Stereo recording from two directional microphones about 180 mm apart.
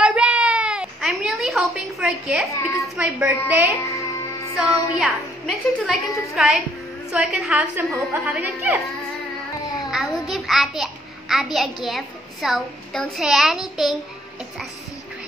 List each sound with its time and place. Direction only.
0.0 s a sound: 5° right (ahead or behind)
3.0 s a woman's voice: 10° right (ahead or behind)
3.7 s music: 15° left (ahead or behind)
4.6 s a child's voice: centre (ahead or behind)
9.8 s a child's voice: centre (ahead or behind)